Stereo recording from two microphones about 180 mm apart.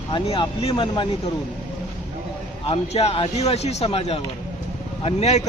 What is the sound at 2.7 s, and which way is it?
Speech, 35° left (ahead or behind).